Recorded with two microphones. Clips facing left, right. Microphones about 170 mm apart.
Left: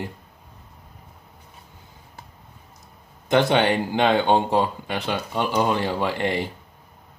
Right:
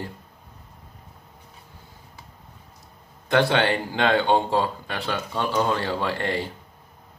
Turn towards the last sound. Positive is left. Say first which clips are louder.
# left 2 dB
turn(degrees=15)  # may be behind; listen again after turning